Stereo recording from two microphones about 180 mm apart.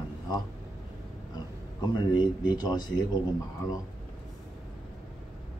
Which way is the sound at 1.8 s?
25° left (ahead or behind).